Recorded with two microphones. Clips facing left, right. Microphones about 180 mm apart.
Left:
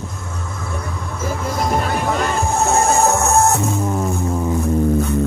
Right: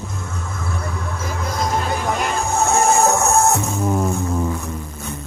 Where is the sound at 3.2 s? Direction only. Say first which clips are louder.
Left 1 dB; centre (ahead or behind).